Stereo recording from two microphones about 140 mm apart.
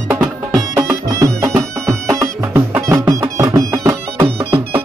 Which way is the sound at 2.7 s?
20° right (ahead or behind).